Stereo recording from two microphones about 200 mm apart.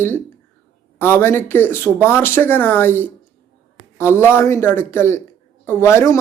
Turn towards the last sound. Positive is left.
turn(degrees=15)  # may be behind; listen again after turning